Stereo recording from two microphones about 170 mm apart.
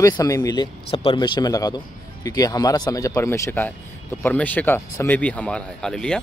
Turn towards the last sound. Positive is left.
turn(degrees=5)  # may be behind; listen again after turning